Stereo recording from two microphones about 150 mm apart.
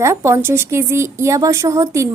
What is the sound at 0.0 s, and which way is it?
A woman's voice, 20° right (ahead or behind).